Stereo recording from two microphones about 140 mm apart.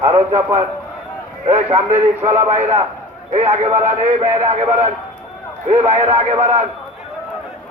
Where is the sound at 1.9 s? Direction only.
15° right (ahead or behind).